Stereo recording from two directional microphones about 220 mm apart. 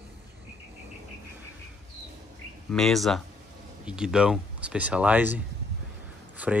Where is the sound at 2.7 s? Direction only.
Centre (ahead or behind).